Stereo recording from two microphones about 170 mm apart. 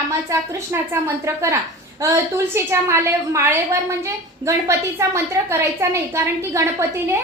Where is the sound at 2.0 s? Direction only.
15° right (ahead or behind).